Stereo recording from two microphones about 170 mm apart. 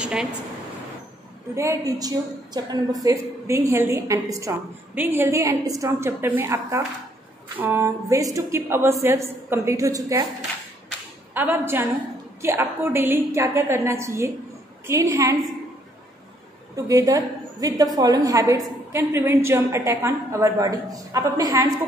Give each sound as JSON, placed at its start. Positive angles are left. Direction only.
{"t": 0.0, "sound": "a sound", "side_deg": -5}
{"t": 1.5, "sound": "a woman's voice", "side_deg": -15}
{"t": 11.3, "sound": "a woman's voice", "side_deg": -10}
{"t": 16.7, "sound": "a woman's voice", "side_deg": -20}